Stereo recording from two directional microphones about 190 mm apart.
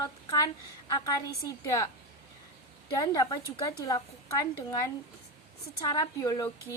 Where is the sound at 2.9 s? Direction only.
20° left (ahead or behind).